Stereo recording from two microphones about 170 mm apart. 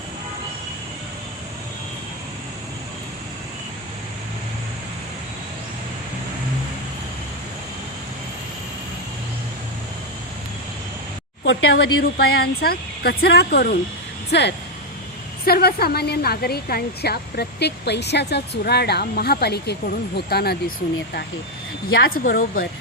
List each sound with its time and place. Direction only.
11.4 s a woman's voice: 70° left (ahead or behind)
14.3 s speech: 90° left
15.4 s a woman's voice: 65° left (ahead or behind)